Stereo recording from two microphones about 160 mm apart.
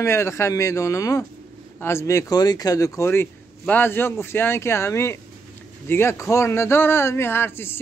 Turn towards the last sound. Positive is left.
turn(degrees=15)  # may be behind; listen again after turning